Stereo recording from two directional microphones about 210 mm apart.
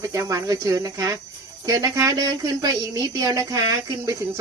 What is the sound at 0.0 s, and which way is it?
Speech, 15° right (ahead or behind).